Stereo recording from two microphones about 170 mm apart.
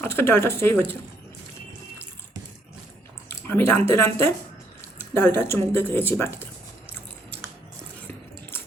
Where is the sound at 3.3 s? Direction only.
15° left (ahead or behind).